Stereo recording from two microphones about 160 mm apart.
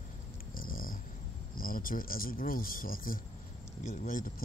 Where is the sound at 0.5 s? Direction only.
60° left (ahead or behind).